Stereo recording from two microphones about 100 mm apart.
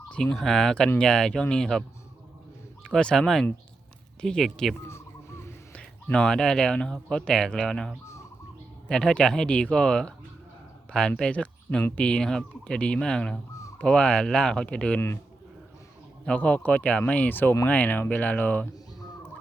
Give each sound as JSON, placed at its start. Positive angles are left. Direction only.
{"t": 0.1, "sound": "speech", "side_deg": 10}
{"t": 2.8, "sound": "speech", "side_deg": 5}
{"t": 4.9, "sound": "a sound", "side_deg": 25}
{"t": 5.7, "sound": "speech", "side_deg": 10}
{"t": 8.0, "sound": "a sound", "side_deg": 30}
{"t": 8.9, "sound": "speech", "side_deg": 5}
{"t": 11.2, "sound": "speech", "side_deg": 10}
{"t": 16.2, "sound": "speech", "side_deg": 10}